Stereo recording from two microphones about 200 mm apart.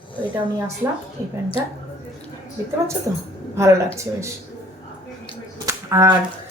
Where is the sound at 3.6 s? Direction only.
15° right (ahead or behind).